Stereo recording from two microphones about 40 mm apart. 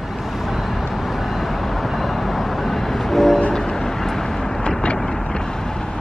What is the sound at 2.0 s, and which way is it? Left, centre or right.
Vehicle, centre.